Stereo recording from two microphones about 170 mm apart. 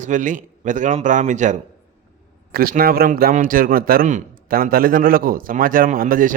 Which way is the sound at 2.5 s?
60° right (ahead or behind).